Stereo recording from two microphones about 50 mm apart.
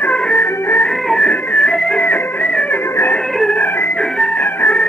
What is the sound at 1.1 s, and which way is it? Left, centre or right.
Music, centre.